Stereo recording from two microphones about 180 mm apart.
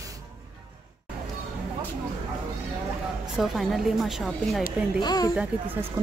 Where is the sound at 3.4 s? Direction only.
Centre (ahead or behind).